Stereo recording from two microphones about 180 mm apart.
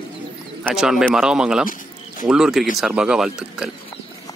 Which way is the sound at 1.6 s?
50° left (ahead or behind).